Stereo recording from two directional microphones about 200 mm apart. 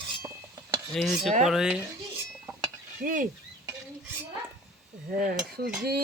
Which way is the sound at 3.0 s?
40° right (ahead or behind).